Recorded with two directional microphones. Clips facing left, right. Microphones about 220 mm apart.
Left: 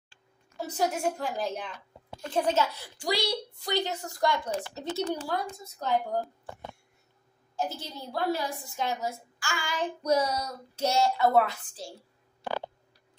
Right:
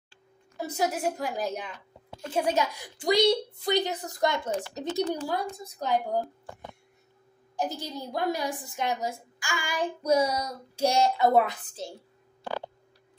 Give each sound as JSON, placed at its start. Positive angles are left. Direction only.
{"t": 0.6, "sound": "a woman's voice", "side_deg": -10}
{"t": 7.5, "sound": "a woman's voice", "side_deg": -15}